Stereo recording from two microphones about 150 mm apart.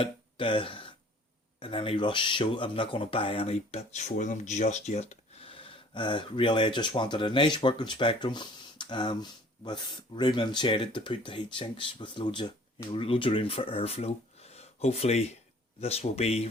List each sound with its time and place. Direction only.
0.0 s speech: 35° left (ahead or behind)